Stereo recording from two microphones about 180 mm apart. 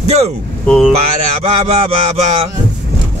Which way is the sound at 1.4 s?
35° right (ahead or behind).